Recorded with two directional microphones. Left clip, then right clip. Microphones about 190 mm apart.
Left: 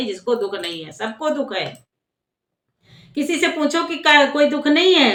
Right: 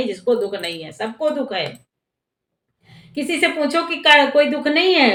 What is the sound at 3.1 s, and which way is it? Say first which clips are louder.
A woman's voice: right 1 dB; 15° left (ahead or behind).